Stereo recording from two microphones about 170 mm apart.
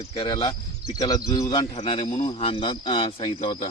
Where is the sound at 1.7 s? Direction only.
40° left (ahead or behind).